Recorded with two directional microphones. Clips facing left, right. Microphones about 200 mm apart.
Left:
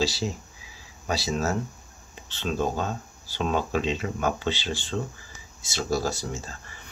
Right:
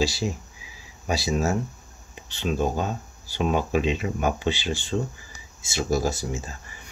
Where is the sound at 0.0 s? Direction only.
15° right (ahead or behind).